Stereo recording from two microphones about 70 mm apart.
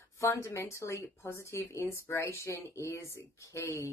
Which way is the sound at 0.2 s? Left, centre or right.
Left.